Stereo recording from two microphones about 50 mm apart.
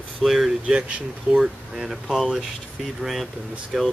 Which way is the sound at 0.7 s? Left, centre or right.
Right.